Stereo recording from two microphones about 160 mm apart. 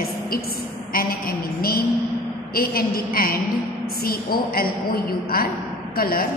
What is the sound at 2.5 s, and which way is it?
A woman's voice, 65° left (ahead or behind).